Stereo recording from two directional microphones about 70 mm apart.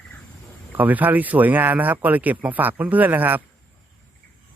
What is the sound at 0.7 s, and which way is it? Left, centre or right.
Speech, right.